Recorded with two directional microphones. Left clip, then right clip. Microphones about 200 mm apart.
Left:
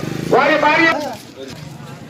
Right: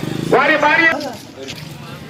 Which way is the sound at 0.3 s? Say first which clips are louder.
Even; 10° left (ahead or behind).